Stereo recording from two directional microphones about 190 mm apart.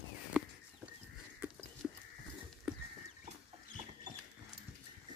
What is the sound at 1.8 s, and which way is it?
Horse, centre (ahead or behind).